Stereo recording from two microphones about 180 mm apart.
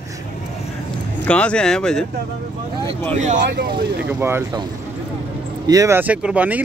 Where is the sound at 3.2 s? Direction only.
40° right (ahead or behind).